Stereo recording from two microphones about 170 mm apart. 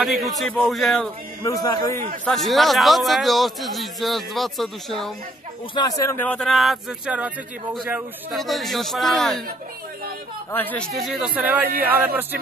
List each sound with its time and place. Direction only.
0.0 s a man's voice: centre (ahead or behind)
1.4 s a man's voice: 20° left (ahead or behind)
2.2 s a man's voice: centre (ahead or behind)
5.8 s a man's voice: 20° left (ahead or behind); by 9.4 s centre (ahead or behind)
10.5 s a man's voice: 10° left (ahead or behind); by 12.4 s 10° right (ahead or behind)